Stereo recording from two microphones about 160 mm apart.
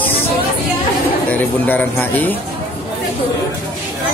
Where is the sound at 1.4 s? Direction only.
10° left (ahead or behind).